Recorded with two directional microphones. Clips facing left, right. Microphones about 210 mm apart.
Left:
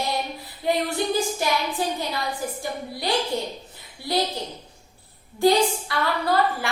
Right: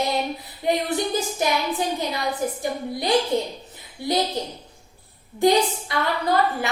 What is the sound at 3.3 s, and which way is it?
A woman's voice, 20° right (ahead or behind).